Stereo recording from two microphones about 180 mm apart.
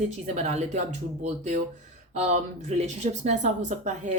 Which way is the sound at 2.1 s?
40° right (ahead or behind).